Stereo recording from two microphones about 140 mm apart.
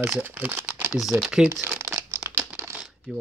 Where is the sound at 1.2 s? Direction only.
5° right (ahead or behind).